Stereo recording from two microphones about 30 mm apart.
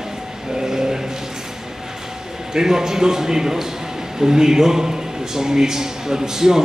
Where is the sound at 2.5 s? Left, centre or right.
Centre.